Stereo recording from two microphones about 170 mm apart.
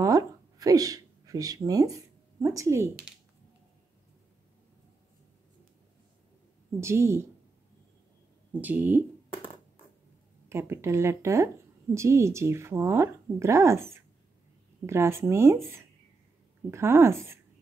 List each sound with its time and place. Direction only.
0.0 s a sound: 20° right (ahead or behind)
6.8 s speech: 15° right (ahead or behind)
8.5 s speech: 10° right (ahead or behind)
10.5 s speech: 15° right (ahead or behind)